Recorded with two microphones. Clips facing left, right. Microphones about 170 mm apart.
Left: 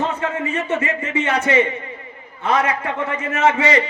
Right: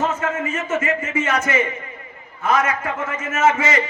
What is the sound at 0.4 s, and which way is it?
Speech, 35° left (ahead or behind).